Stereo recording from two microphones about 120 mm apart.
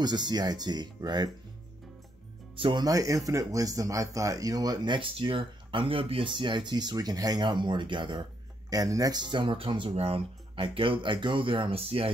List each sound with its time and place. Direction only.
0.0 s speech: 35° right (ahead or behind)
2.5 s speech: 45° right (ahead or behind)
2.8 s speech: 30° right (ahead or behind); by 12.1 s 50° right (ahead or behind)